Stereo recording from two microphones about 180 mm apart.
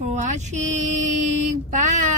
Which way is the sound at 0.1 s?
40° right (ahead or behind).